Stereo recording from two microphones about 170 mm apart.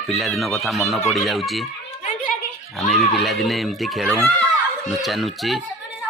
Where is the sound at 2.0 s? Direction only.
55° left (ahead or behind).